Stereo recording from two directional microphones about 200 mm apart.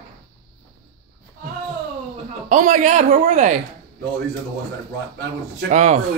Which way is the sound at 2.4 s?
40° right (ahead or behind).